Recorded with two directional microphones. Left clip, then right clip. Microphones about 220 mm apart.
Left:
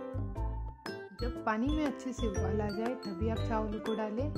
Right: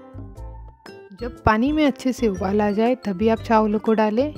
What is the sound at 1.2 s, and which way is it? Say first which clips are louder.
Speech: right 14 dB; 40° right (ahead or behind).